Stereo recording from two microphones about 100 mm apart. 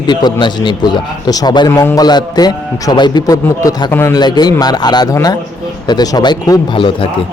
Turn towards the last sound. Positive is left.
turn(degrees=60)  # may be behind; listen again after turning